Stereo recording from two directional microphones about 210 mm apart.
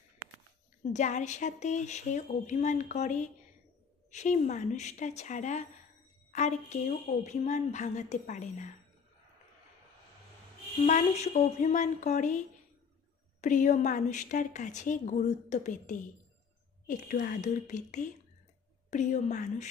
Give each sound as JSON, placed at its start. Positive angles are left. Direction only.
{"t": 0.9, "sound": "speech", "side_deg": 35}
{"t": 10.9, "sound": "speech", "side_deg": 35}